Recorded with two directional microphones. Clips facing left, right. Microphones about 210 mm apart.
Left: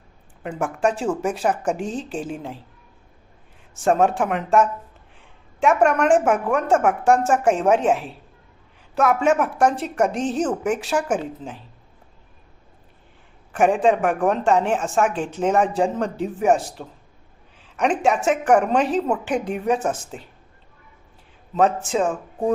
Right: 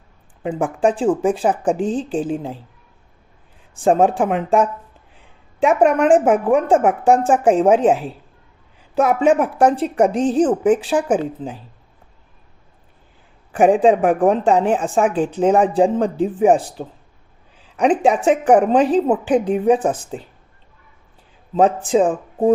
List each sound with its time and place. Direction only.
0.4 s a woman's voice: 35° right (ahead or behind)
3.8 s a woman's voice: 30° right (ahead or behind)
13.6 s a woman's voice: 35° right (ahead or behind)
21.5 s a woman's voice: 35° right (ahead or behind)